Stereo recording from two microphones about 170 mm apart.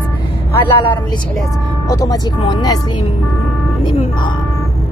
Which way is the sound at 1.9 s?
20° left (ahead or behind).